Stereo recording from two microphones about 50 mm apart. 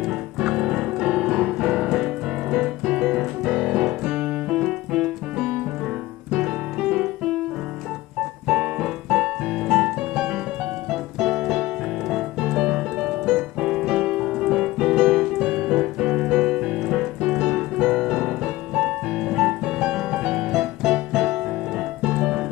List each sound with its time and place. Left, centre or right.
0.4 s piano: centre
4.6 s keyboard: centre
6.3 s music: centre
8.5 s keyboard: centre
10.9 s piano: centre
12.5 s keyboard: centre
17.2 s piano: centre
21.1 s keyboard: centre
22.2 s piano: centre